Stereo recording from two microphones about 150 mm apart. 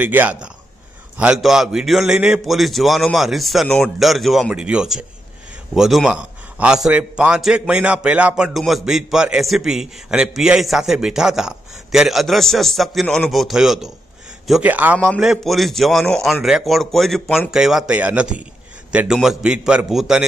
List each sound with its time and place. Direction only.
0.0 s a man's voice: 10° right (ahead or behind)